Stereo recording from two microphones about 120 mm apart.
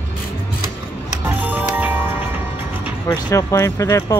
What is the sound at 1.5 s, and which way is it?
Music, 15° right (ahead or behind).